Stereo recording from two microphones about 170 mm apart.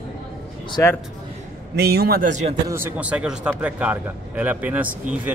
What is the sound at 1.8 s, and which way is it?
Speech, 70° right (ahead or behind).